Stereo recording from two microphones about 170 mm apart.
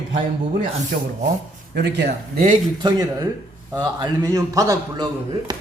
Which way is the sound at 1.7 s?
80° right.